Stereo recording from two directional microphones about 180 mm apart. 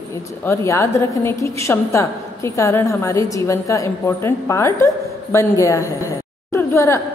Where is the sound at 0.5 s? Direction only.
15° left (ahead or behind).